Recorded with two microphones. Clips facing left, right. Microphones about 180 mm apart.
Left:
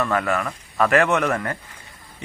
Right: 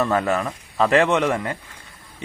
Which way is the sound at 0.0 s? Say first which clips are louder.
Right 2 dB; 20° right (ahead or behind).